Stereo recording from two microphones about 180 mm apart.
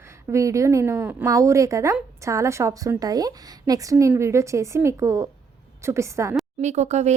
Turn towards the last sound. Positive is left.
turn(degrees=-40)  # may be behind; listen again after turning